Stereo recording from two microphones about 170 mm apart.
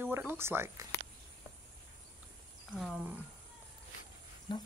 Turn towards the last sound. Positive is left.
turn(degrees=25)  # may be behind; listen again after turning